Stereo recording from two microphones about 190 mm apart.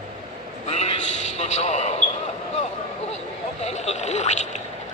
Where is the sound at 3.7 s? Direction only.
35° left (ahead or behind).